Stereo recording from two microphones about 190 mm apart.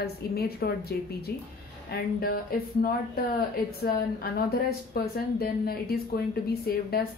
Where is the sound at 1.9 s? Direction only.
55° left (ahead or behind).